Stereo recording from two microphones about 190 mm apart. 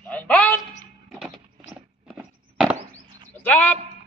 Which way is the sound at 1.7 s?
5° right (ahead or behind).